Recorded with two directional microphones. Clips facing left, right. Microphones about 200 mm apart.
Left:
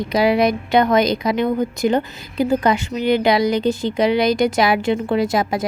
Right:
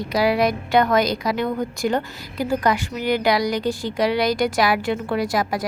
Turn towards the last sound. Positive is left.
turn(degrees=20)  # may be behind; listen again after turning